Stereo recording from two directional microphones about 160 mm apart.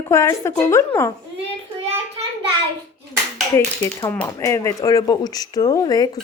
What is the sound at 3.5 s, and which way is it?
Speech, 15° left (ahead or behind).